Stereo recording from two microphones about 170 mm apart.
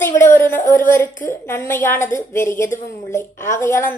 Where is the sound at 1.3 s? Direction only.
15° left (ahead or behind).